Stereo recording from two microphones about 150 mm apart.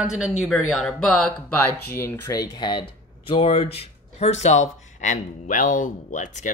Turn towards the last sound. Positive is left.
turn(degrees=55)  # may be behind; listen again after turning